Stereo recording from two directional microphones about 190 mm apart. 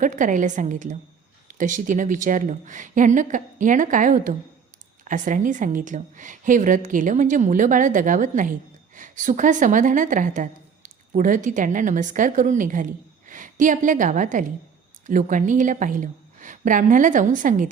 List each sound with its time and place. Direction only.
0.0 s a woman's voice: 45° right (ahead or behind)